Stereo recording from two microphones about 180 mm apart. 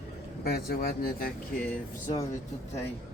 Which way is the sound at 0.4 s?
60° left (ahead or behind).